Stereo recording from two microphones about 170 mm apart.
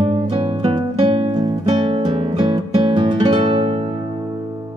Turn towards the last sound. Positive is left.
turn(degrees=-35)  # may be behind; listen again after turning